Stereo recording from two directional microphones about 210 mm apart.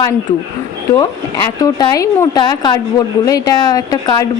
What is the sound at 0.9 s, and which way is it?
Speech, 15° left (ahead or behind).